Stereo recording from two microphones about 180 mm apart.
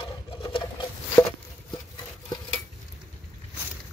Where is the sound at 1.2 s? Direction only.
15° left (ahead or behind).